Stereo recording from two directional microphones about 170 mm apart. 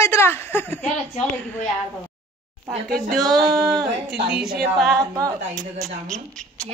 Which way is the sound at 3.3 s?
20° right (ahead or behind).